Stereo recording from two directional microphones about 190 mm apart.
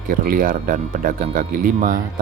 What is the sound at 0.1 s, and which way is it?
Speech, 45° right (ahead or behind).